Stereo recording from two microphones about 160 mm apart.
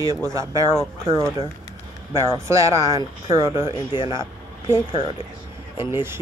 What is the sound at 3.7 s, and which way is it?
Speech, 25° left (ahead or behind).